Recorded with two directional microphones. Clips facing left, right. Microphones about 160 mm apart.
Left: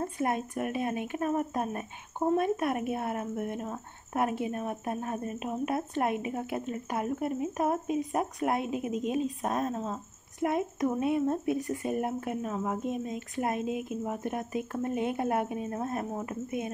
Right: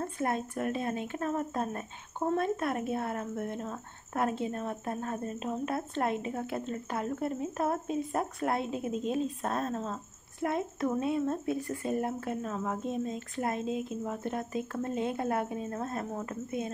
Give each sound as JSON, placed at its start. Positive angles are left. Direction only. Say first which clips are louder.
{"t": 0.0, "sound": "speech", "louder": "left 2 dB", "side_deg": 15}